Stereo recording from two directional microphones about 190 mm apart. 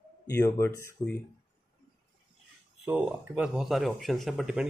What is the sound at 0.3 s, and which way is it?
Speech, 15° left (ahead or behind).